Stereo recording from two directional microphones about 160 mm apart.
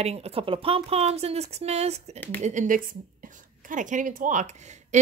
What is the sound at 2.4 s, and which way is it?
A woman's voice, 50° right (ahead or behind).